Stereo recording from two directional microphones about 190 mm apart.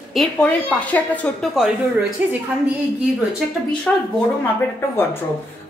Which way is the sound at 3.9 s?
5° left (ahead or behind).